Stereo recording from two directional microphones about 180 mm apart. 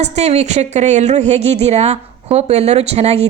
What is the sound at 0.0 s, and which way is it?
Speech, 35° right (ahead or behind).